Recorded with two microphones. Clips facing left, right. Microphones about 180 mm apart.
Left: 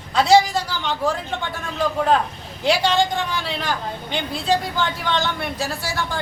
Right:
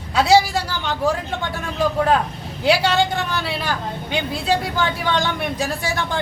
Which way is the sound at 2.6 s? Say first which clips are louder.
Right 1 dB; 10° right (ahead or behind).